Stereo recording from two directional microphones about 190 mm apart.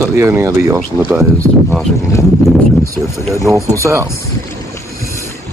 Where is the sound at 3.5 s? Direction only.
15° right (ahead or behind).